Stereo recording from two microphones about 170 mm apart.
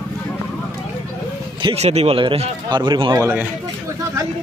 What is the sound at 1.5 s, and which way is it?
Speech, 35° right (ahead or behind).